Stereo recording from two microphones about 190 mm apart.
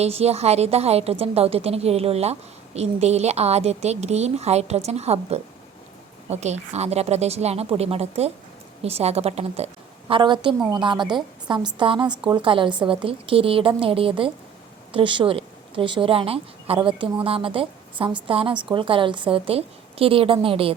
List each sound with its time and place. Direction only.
0.0 s a woman's voice: 35° right (ahead or behind)